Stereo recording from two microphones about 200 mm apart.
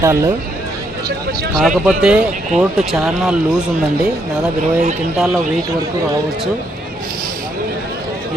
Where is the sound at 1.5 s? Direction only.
5° right (ahead or behind).